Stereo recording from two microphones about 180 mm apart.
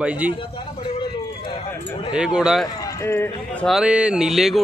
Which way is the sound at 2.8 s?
15° left (ahead or behind).